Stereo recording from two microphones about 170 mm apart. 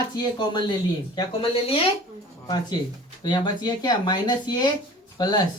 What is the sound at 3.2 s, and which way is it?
Speech, 25° left (ahead or behind).